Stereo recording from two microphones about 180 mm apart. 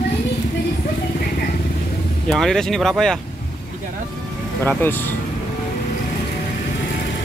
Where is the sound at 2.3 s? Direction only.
Centre (ahead or behind).